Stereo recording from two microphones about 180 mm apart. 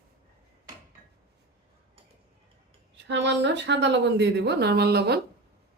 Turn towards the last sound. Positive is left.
turn(degrees=-65)  # may be behind; listen again after turning